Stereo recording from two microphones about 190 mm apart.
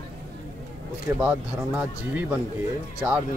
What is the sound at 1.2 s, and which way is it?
Speech, 5° right (ahead or behind).